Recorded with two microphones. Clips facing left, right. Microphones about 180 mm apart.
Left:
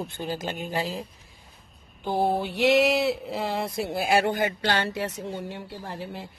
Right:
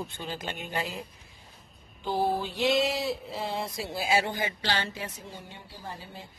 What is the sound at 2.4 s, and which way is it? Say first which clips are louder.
Speech: left 5 dB; 65° left (ahead or behind).